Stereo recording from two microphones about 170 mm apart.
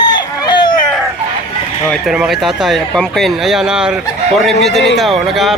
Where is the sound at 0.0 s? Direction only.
25° left (ahead or behind).